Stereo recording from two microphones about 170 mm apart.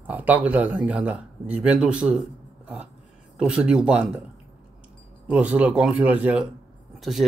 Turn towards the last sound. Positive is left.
turn(degrees=0)  # may be behind; listen again after turning